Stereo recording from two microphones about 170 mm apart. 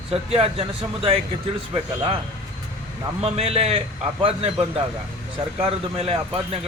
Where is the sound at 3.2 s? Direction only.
35° right (ahead or behind).